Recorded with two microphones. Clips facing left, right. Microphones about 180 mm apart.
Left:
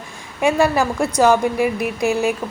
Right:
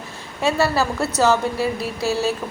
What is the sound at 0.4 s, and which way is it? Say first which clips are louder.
A woman's voice: left 3 dB; 15° left (ahead or behind).